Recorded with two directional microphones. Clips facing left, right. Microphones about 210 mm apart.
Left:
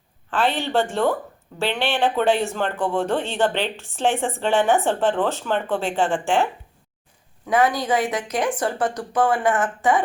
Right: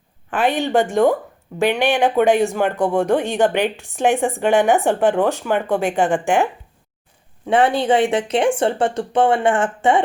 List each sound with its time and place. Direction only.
0.3 s a woman's voice: 15° right (ahead or behind)
7.4 s speech: 30° right (ahead or behind)